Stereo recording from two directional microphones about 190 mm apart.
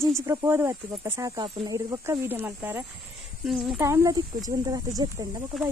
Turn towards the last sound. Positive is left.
turn(degrees=-20)  # may be behind; listen again after turning